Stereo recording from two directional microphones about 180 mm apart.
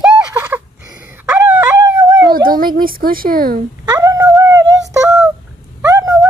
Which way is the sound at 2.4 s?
50° right (ahead or behind).